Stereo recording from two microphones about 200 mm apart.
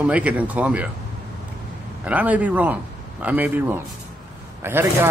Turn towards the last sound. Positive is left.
turn(degrees=-10)  # may be behind; listen again after turning